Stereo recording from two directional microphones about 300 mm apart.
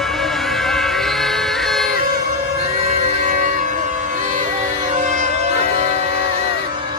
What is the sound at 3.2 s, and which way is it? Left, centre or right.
Music, right.